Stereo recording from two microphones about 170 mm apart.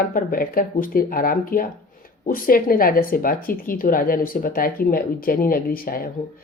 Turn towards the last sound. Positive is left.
turn(degrees=60)  # may be behind; listen again after turning